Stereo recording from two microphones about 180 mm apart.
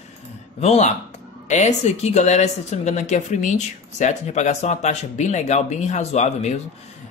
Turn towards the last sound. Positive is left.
turn(degrees=35)  # may be behind; listen again after turning